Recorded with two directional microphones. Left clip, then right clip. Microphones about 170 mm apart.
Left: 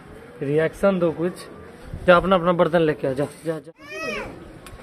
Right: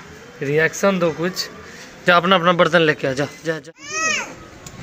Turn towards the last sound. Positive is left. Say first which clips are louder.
# right 8 dB
turn(degrees=45)  # may be behind; listen again after turning